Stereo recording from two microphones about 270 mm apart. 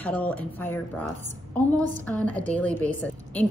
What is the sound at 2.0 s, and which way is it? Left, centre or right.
A woman's voice, centre.